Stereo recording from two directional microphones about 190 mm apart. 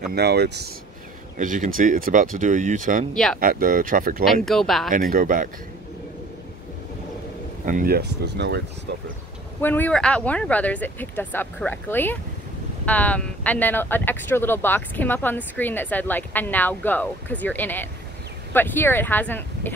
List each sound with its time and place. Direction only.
0.1 s speech: 60° right (ahead or behind)
1.4 s speech: 45° right (ahead or behind)
4.2 s speech: centre (ahead or behind)
4.9 s speech: 45° right (ahead or behind)
7.6 s speech: 50° right (ahead or behind)
9.6 s speech: 10° left (ahead or behind)